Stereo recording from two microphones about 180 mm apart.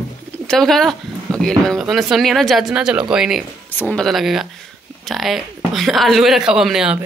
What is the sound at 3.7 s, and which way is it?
Speech, 10° left (ahead or behind).